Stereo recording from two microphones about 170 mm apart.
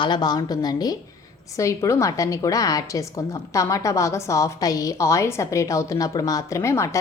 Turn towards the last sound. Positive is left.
turn(degrees=15)  # may be behind; listen again after turning